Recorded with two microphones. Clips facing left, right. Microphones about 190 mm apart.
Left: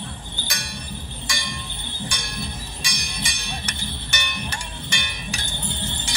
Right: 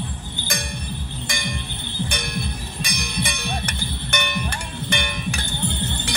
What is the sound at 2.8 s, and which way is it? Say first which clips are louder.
Music: right 6 dB; 60° right (ahead or behind).